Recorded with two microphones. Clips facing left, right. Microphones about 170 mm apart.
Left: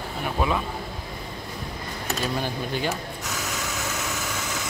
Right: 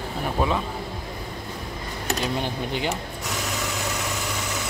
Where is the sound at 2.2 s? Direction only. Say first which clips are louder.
Even; 20° right (ahead or behind).